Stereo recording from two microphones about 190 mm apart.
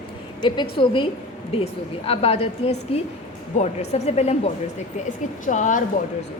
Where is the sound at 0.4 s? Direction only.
25° left (ahead or behind).